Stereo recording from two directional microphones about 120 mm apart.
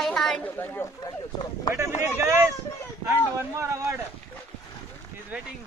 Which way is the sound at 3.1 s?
25° right (ahead or behind).